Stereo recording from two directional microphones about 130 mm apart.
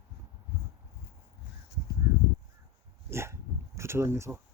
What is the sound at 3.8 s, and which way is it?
Speech, 20° right (ahead or behind).